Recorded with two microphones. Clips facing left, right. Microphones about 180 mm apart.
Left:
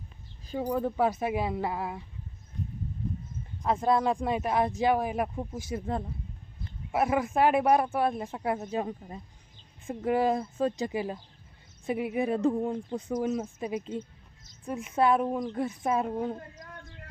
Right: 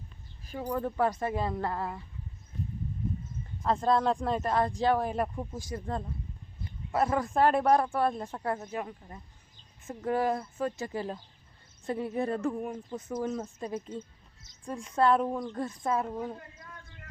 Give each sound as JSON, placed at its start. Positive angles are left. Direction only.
{"t": 0.4, "sound": "speech", "side_deg": 20}
{"t": 3.6, "sound": "speech", "side_deg": 15}
{"t": 7.2, "sound": "speech", "side_deg": 5}
{"t": 12.5, "sound": "speech", "side_deg": 30}
{"t": 13.0, "sound": "speech", "side_deg": 15}